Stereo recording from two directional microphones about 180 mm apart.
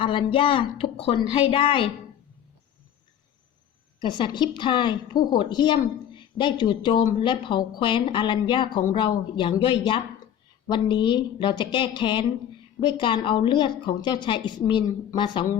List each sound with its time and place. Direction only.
0.0 s speech: 30° left (ahead or behind)
4.0 s speech: 25° left (ahead or behind)